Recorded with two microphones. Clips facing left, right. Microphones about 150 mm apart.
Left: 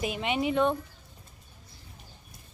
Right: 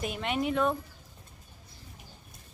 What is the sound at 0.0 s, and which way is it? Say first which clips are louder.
Speech: left 2 dB; centre (ahead or behind).